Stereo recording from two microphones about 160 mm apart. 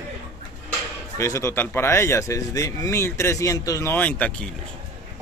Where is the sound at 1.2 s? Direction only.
15° left (ahead or behind).